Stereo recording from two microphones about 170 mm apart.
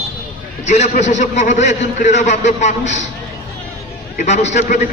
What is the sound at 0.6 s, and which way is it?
A man's voice, 45° left (ahead or behind).